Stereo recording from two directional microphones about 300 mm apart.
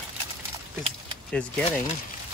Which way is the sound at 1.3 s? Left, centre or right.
Centre.